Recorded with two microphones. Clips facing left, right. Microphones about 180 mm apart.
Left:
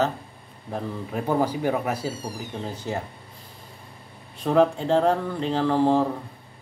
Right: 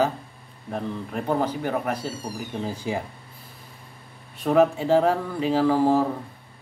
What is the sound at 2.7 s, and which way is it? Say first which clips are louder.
Speech: right 2 dB; 10° right (ahead or behind).